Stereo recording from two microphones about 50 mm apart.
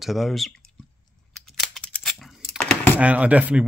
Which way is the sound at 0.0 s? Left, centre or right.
Centre.